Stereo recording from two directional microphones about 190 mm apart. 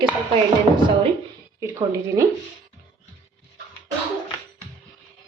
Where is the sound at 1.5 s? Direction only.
15° right (ahead or behind).